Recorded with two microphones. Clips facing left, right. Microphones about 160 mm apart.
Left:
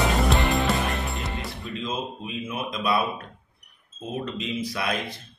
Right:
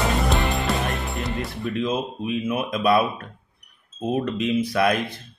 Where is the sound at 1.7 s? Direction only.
60° right (ahead or behind).